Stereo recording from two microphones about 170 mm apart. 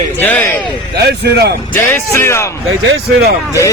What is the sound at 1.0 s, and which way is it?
Speech, 75° right (ahead or behind).